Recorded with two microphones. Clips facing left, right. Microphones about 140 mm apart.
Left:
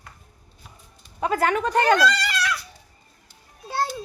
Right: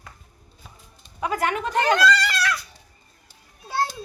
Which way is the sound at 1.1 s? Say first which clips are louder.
Left 3 dB; 30° left (ahead or behind).